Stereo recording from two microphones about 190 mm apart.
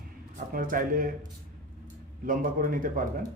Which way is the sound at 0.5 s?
45° right (ahead or behind).